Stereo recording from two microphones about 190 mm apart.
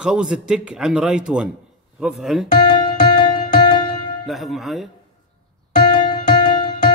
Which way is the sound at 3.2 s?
25° left (ahead or behind).